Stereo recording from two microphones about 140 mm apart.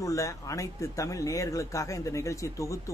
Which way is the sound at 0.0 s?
25° left (ahead or behind).